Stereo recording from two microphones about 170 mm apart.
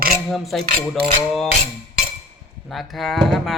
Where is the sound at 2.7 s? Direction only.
Centre (ahead or behind).